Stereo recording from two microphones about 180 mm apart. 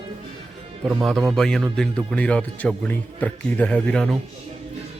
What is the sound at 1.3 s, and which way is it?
Speech, 5° left (ahead or behind).